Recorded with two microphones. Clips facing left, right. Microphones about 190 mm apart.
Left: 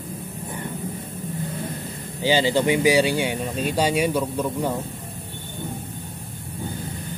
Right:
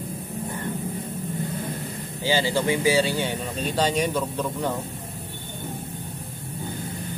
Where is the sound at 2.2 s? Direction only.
15° left (ahead or behind).